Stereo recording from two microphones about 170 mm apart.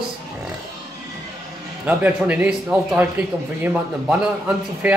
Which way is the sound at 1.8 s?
10° right (ahead or behind).